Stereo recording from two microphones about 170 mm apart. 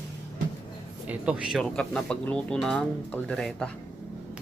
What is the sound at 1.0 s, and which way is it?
Speech, 5° right (ahead or behind).